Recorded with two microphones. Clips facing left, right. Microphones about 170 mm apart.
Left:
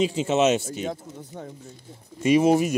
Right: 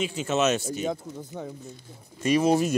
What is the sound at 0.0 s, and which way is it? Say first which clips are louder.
Speech: left 4 dB; 25° left (ahead or behind).